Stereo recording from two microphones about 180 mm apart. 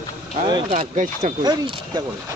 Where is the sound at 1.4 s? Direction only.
25° right (ahead or behind).